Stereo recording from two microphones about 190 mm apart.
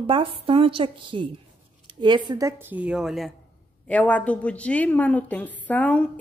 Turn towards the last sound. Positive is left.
turn(degrees=10)  # may be behind; listen again after turning